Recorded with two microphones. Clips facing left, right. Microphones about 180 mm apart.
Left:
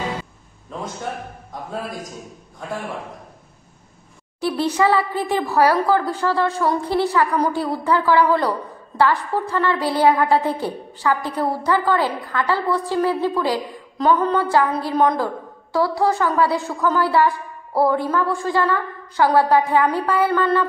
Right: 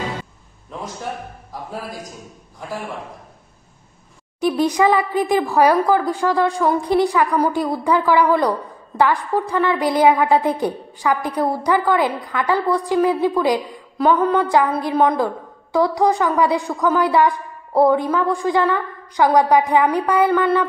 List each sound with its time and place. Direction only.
4.4 s speech: 15° right (ahead or behind)